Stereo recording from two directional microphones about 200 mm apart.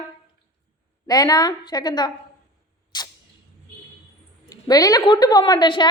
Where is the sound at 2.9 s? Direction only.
20° left (ahead or behind).